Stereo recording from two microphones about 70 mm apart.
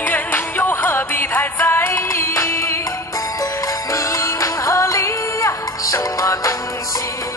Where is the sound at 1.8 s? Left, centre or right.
Left.